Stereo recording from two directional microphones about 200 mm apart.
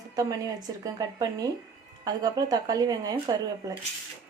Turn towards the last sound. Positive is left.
turn(degrees=-20)  # may be behind; listen again after turning